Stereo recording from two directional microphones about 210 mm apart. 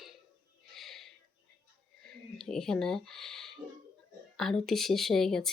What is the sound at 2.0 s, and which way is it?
Speech, centre (ahead or behind).